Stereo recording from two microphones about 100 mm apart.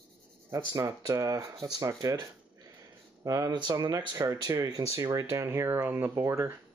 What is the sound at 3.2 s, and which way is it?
Speech, 40° right (ahead or behind).